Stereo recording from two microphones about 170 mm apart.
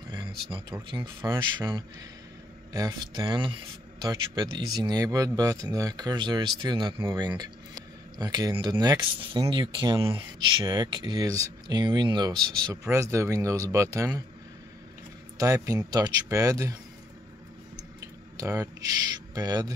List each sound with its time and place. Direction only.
0.1 s speech: 30° right (ahead or behind)
2.7 s speech: 25° right (ahead or behind)
15.3 s speech: 20° right (ahead or behind)
18.4 s speech: 20° right (ahead or behind)